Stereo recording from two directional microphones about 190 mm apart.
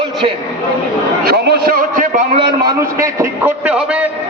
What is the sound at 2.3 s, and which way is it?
A man's voice, 25° right (ahead or behind).